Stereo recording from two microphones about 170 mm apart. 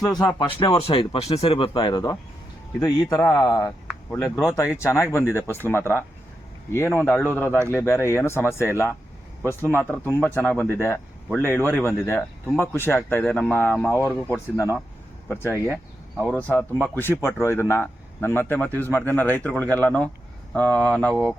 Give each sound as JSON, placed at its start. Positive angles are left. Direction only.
{"t": 0.2, "sound": "speech", "side_deg": 25}
{"t": 15.5, "sound": "speech", "side_deg": -10}
{"t": 16.2, "sound": "speech", "side_deg": 5}
{"t": 21.1, "sound": "speech", "side_deg": -20}